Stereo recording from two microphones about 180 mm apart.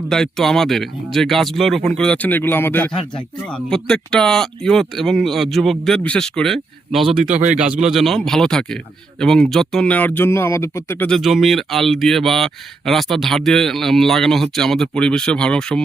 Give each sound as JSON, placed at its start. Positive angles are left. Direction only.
{"t": 0.1, "sound": "a man's voice", "side_deg": 0}
{"t": 7.3, "sound": "a man's voice", "side_deg": -40}
{"t": 7.6, "sound": "a man's voice", "side_deg": -5}